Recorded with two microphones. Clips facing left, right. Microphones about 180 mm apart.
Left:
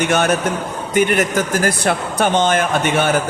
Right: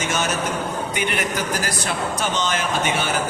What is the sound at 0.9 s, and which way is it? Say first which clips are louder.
A man's voice: left 12 dB; 45° left (ahead or behind).